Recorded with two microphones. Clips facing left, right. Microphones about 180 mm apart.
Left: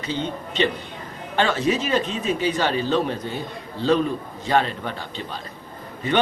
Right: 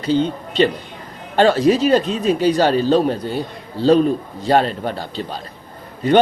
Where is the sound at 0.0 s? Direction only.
35° right (ahead or behind).